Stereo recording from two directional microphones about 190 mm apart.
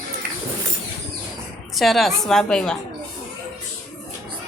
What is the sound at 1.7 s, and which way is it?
A woman's voice, centre (ahead or behind).